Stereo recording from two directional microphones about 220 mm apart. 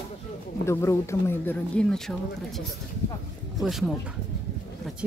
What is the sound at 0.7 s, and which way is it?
Speech, 10° left (ahead or behind).